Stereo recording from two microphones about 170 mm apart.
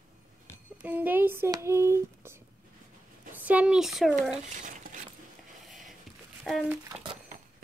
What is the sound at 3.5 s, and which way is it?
Speech, 5° right (ahead or behind).